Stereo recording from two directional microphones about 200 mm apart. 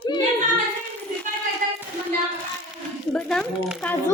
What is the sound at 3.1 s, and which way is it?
Speech, 5° left (ahead or behind).